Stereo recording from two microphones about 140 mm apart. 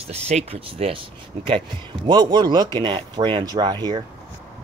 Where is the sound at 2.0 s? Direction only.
30° right (ahead or behind).